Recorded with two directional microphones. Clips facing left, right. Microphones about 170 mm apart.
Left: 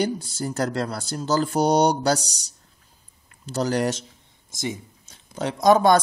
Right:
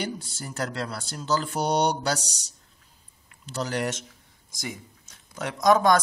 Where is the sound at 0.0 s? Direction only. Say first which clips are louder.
Left 8 dB; 40° left (ahead or behind).